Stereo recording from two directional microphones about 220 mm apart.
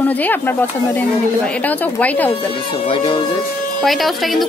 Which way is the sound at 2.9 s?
25° left (ahead or behind).